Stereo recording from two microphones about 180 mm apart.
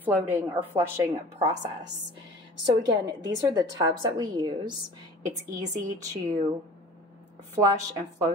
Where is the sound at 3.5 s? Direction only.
20° right (ahead or behind).